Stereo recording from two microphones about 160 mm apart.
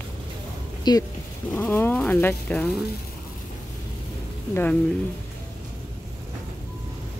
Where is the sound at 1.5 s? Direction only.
10° left (ahead or behind).